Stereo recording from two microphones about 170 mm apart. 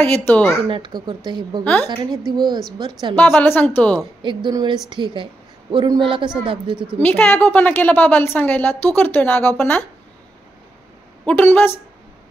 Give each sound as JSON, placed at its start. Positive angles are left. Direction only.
{"t": 0.0, "sound": "a woman's voice", "side_deg": 10}
{"t": 0.7, "sound": "speech", "side_deg": -30}
{"t": 1.6, "sound": "a woman's voice", "side_deg": 10}
{"t": 2.8, "sound": "speech", "side_deg": -30}
{"t": 3.2, "sound": "a woman's voice", "side_deg": 10}
{"t": 4.2, "sound": "a woman's voice", "side_deg": -30}
{"t": 7.0, "sound": "a woman's voice", "side_deg": 10}
{"t": 11.2, "sound": "a woman's voice", "side_deg": 10}